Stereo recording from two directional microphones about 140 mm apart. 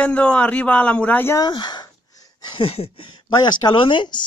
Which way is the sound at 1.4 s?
30° left (ahead or behind).